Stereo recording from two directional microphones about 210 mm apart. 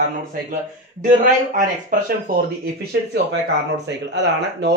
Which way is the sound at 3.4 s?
55° right (ahead or behind).